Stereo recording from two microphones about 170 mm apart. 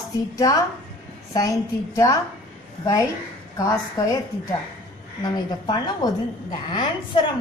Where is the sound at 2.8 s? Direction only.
20° left (ahead or behind).